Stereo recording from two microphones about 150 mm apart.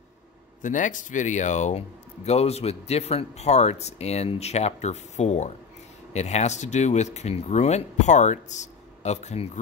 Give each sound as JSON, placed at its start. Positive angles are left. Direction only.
{"t": 0.6, "sound": "speech", "side_deg": 60}